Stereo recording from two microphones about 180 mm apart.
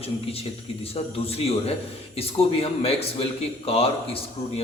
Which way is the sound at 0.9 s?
35° left (ahead or behind).